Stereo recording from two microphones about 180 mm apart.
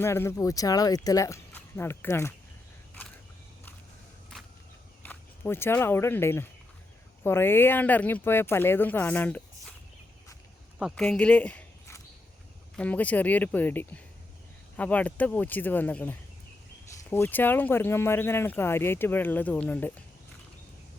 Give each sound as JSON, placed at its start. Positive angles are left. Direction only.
{"t": 0.0, "sound": "speech", "side_deg": 15}
{"t": 5.0, "sound": "speech", "side_deg": 15}
{"t": 10.8, "sound": "a sound", "side_deg": 0}
{"t": 12.7, "sound": "speech", "side_deg": 10}